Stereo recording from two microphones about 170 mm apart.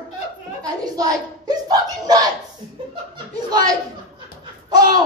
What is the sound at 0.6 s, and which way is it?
Speech, 20° right (ahead or behind).